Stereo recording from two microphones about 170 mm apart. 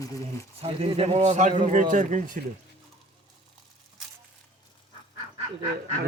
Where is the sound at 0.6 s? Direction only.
35° right (ahead or behind).